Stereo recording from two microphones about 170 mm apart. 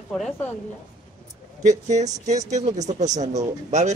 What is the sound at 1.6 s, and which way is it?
Speech, 45° right (ahead or behind).